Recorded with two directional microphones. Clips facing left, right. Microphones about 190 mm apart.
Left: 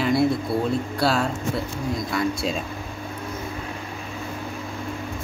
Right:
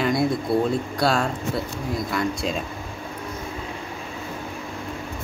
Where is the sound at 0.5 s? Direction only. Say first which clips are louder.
Right 3 dB; 25° right (ahead or behind).